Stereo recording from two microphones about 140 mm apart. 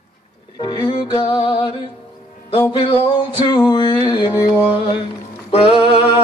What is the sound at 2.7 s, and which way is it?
Music, 40° left (ahead or behind).